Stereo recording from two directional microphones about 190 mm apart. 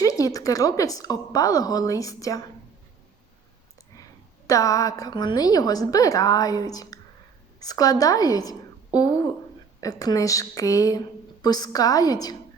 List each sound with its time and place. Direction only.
0.0 s a woman's voice: 20° left (ahead or behind)
4.4 s a woman's voice: 15° left (ahead or behind)